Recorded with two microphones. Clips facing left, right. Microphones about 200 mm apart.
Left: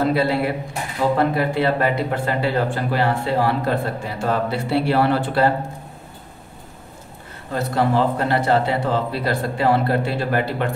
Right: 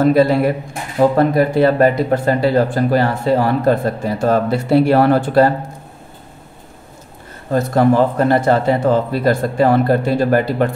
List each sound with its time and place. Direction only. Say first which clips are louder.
0.0 s speech: right 7 dB; 45° right (ahead or behind)
7.5 s speech: right 6 dB; 45° right (ahead or behind)